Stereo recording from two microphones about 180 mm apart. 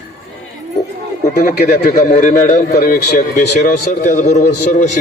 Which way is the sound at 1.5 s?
60° left (ahead or behind).